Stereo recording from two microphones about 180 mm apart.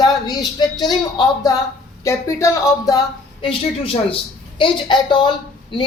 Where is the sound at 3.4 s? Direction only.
30° left (ahead or behind).